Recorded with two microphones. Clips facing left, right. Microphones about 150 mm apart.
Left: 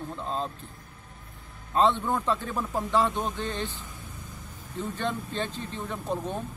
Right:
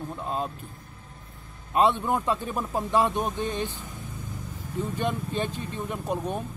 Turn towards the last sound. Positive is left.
turn(degrees=-15)  # may be behind; listen again after turning